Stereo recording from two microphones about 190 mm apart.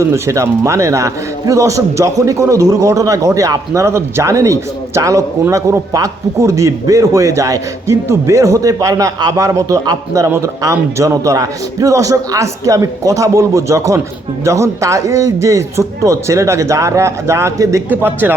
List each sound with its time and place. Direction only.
0.1 s a man's voice: 15° right (ahead or behind)